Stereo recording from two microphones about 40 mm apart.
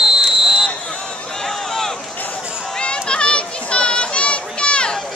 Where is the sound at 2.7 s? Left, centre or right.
Left.